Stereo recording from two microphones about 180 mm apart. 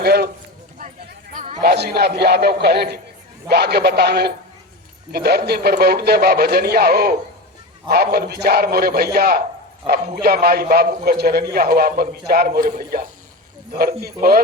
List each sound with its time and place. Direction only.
0.0 s a man's voice: 60° right (ahead or behind)
1.3 s chatter: 40° right (ahead or behind)
1.6 s a man's voice: 65° right (ahead or behind)